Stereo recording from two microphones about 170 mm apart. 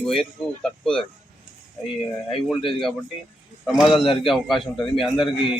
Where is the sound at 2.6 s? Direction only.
30° left (ahead or behind).